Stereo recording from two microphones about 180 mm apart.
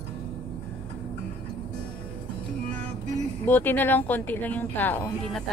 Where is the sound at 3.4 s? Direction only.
10° left (ahead or behind).